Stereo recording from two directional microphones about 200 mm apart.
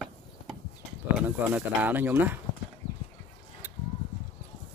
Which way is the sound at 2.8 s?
25° left (ahead or behind).